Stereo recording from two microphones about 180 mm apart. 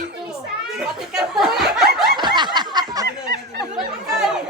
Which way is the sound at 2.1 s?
25° right (ahead or behind).